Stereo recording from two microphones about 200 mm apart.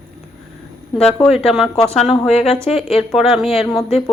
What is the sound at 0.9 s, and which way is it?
Speech, 5° left (ahead or behind).